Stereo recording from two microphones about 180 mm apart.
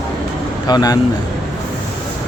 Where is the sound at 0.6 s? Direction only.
20° left (ahead or behind).